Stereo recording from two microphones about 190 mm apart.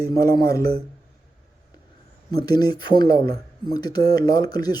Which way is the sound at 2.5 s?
20° left (ahead or behind).